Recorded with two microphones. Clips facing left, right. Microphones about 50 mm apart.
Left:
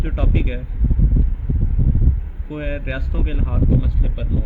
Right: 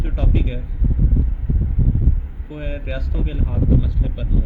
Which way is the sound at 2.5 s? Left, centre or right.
Left.